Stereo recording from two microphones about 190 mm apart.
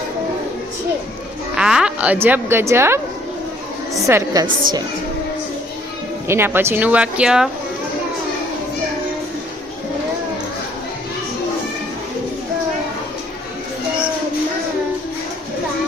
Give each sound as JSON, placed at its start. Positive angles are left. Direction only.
{"t": 1.5, "sound": "a woman's voice", "side_deg": -5}
{"t": 4.0, "sound": "a woman's voice", "side_deg": -15}
{"t": 6.2, "sound": "a woman's voice", "side_deg": -10}